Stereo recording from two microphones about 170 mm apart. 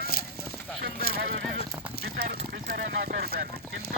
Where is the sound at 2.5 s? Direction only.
70° right (ahead or behind).